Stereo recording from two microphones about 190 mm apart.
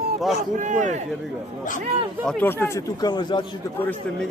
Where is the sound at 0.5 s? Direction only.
40° right (ahead or behind).